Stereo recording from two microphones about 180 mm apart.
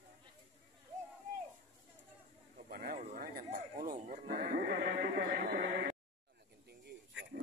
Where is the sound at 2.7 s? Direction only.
55° right (ahead or behind).